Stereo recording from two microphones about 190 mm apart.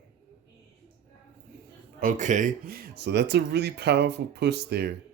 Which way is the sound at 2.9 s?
60° right (ahead or behind).